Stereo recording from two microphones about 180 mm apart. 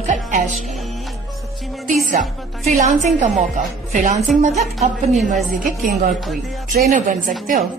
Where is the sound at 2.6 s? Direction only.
40° right (ahead or behind).